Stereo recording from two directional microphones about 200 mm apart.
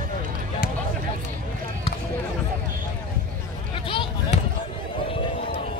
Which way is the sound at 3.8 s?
25° left (ahead or behind).